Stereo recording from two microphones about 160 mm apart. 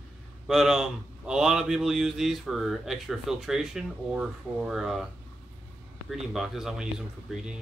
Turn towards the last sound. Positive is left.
turn(degrees=-5)  # may be behind; listen again after turning